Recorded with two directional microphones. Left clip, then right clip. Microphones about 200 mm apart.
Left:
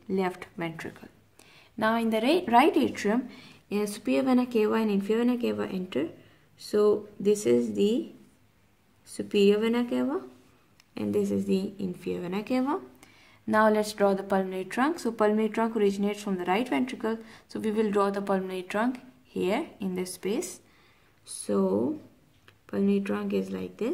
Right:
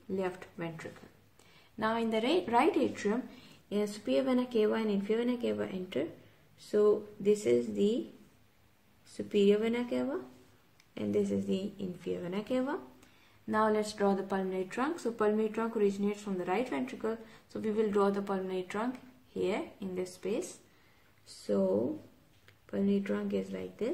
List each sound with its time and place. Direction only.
0.1 s a woman's voice: 40° left (ahead or behind)
9.1 s a woman's voice: 30° left (ahead or behind)
21.5 s a woman's voice: 35° left (ahead or behind)